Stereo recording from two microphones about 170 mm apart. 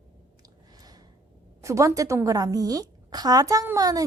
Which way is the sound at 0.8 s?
25° right (ahead or behind).